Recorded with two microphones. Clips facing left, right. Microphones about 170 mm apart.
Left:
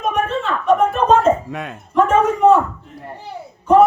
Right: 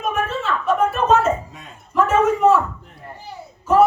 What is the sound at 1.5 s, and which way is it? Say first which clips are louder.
Speech: left 13 dB; 70° left (ahead or behind).